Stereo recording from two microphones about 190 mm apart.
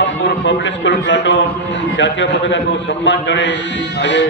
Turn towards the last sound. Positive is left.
turn(degrees=70)  # may be behind; listen again after turning